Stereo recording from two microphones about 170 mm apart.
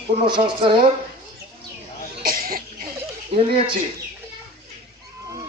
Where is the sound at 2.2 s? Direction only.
60° right (ahead or behind).